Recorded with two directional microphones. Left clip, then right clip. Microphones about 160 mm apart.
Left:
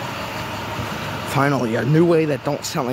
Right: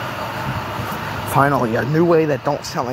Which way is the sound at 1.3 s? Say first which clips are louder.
Right 4 dB; 15° left (ahead or behind).